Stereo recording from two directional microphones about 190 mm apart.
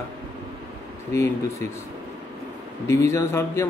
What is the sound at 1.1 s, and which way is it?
Speech, 15° left (ahead or behind).